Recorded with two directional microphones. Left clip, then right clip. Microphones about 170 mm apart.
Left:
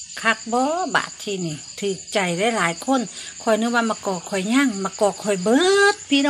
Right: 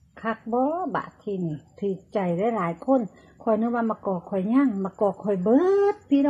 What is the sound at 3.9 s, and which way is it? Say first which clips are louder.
Speech: left 3 dB; 25° left (ahead or behind).